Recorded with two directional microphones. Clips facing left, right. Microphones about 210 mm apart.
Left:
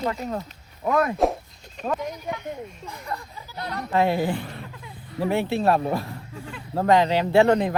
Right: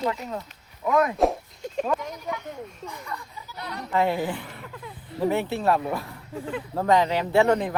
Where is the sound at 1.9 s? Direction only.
25° left (ahead or behind).